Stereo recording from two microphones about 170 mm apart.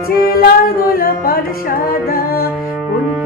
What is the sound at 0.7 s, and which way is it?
Music, 60° left (ahead or behind).